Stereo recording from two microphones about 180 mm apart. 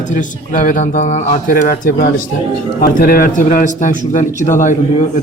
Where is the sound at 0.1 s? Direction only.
45° left (ahead or behind).